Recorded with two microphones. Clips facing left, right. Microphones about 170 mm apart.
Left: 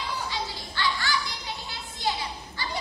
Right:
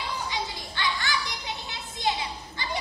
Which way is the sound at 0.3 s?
20° right (ahead or behind).